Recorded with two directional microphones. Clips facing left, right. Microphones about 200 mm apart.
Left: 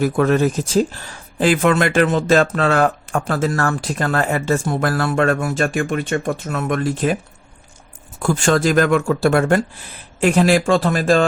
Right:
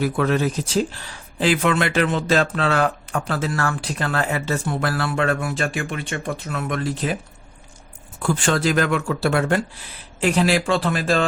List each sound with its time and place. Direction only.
0.0 s speech: 45° left (ahead or behind)
8.2 s speech: 45° left (ahead or behind)